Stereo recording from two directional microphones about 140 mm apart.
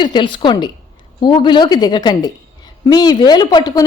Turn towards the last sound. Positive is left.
turn(degrees=30)  # may be behind; listen again after turning